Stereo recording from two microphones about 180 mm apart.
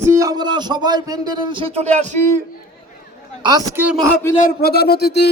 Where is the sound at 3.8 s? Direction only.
Centre (ahead or behind).